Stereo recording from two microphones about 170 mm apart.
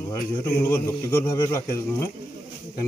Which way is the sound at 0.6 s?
10° left (ahead or behind).